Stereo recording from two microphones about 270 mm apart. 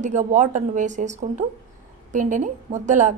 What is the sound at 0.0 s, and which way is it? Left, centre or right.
A woman's voice, right.